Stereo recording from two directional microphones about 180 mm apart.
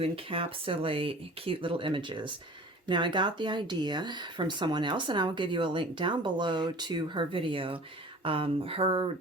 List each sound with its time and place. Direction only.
0.0 s speech: 30° right (ahead or behind)